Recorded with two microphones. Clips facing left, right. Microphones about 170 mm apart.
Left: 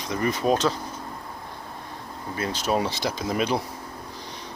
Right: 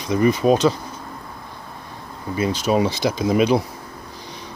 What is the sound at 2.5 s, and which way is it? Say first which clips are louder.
Speech: right 5 dB; 5° right (ahead or behind).